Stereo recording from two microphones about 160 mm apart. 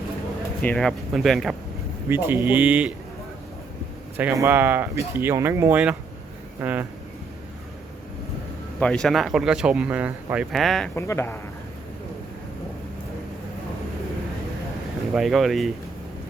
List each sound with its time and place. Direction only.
0.6 s speech: 5° left (ahead or behind)
2.0 s speech: 15° right (ahead or behind)
4.2 s speech: 15° right (ahead or behind)
8.8 s speech: 5° left (ahead or behind)
10.9 s speech: 15° left (ahead or behind)
15.1 s speech: centre (ahead or behind)